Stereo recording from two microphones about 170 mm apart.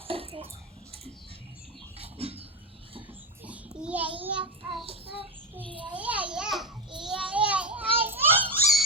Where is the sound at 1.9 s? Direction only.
35° right (ahead or behind).